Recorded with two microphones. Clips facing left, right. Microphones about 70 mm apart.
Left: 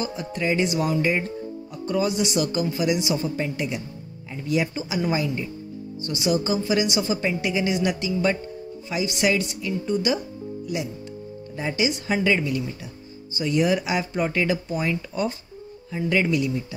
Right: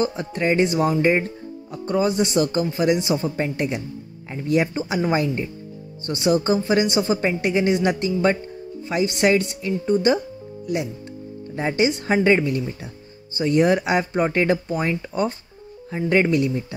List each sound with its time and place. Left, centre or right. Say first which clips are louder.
0.0 s a woman's voice: right 4 dB; right
11.5 s a woman's voice: right 4 dB; right